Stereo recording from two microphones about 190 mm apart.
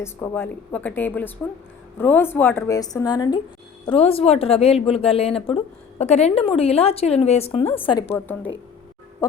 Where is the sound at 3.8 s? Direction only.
30° left (ahead or behind).